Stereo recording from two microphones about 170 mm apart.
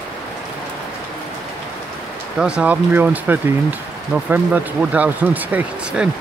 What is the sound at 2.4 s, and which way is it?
Speech, 5° right (ahead or behind).